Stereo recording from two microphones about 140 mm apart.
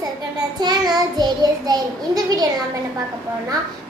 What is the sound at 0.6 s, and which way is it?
Child singing, 30° right (ahead or behind).